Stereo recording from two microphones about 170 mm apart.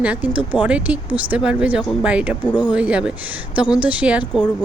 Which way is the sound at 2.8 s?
5° right (ahead or behind).